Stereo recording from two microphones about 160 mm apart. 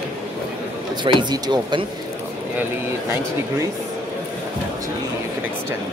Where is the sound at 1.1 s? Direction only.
25° right (ahead or behind).